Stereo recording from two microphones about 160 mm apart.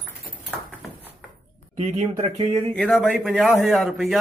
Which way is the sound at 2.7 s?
5° left (ahead or behind).